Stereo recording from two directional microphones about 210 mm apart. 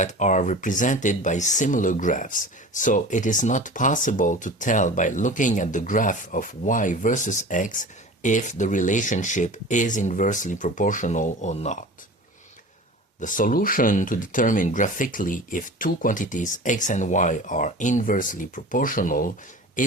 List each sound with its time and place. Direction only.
0.0 s speech: 35° left (ahead or behind)
13.1 s speech: 40° left (ahead or behind)